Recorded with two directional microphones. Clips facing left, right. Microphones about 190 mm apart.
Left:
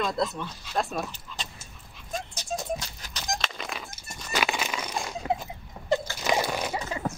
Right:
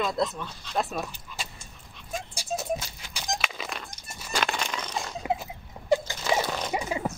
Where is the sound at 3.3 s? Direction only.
5° right (ahead or behind).